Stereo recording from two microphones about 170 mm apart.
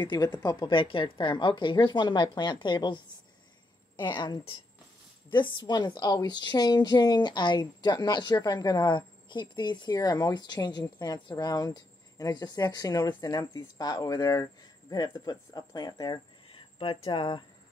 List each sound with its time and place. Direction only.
0.0 s a woman's voice: 25° left (ahead or behind)
4.0 s a woman's voice: 25° left (ahead or behind)